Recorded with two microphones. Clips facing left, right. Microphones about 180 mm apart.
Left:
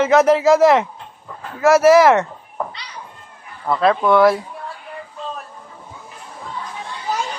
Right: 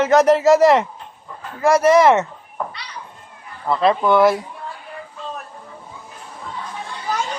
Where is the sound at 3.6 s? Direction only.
Centre (ahead or behind).